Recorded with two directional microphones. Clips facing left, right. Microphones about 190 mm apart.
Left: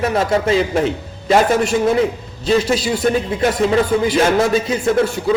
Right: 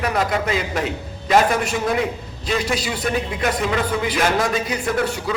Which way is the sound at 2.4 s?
25° left (ahead or behind).